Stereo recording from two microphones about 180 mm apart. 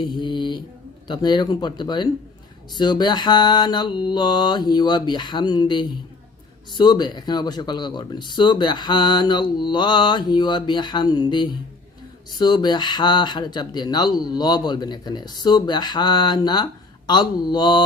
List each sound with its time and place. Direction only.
0.0 s mantra: 25° left (ahead or behind)
1.0 s speech: 25° left (ahead or behind)